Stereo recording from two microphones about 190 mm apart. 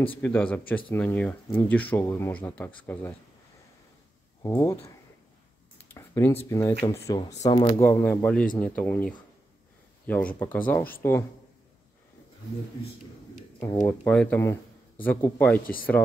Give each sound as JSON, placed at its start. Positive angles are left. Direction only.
{"t": 0.1, "sound": "speech", "side_deg": 10}
{"t": 4.4, "sound": "speech", "side_deg": 15}
{"t": 7.4, "sound": "speech", "side_deg": 25}
{"t": 7.8, "sound": "speech", "side_deg": 10}
{"t": 13.6, "sound": "speech", "side_deg": 15}
{"t": 15.6, "sound": "speech", "side_deg": 50}